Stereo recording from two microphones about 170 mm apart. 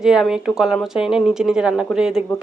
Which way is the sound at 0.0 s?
5° right (ahead or behind).